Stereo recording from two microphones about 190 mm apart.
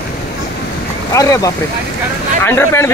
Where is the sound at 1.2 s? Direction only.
15° left (ahead or behind).